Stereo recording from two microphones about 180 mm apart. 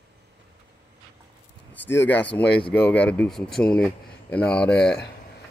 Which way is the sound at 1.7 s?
10° left (ahead or behind).